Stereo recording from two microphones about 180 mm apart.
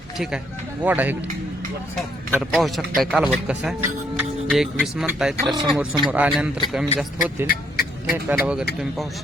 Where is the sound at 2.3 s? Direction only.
5° right (ahead or behind).